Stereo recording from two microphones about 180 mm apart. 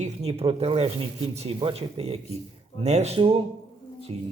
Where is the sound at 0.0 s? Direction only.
35° right (ahead or behind).